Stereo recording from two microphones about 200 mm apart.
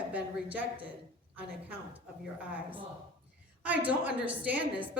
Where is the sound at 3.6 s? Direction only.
5° right (ahead or behind).